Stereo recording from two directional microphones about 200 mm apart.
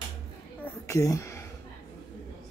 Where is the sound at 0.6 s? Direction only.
15° left (ahead or behind).